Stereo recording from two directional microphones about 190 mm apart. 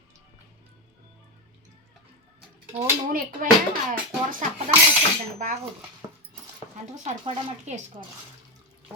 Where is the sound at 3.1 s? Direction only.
50° right (ahead or behind).